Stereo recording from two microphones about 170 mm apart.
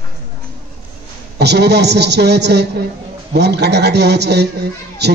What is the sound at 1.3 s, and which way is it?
A man's voice, 75° right (ahead or behind).